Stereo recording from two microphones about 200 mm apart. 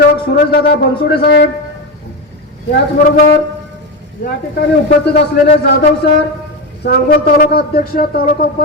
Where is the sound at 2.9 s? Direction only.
50° left (ahead or behind).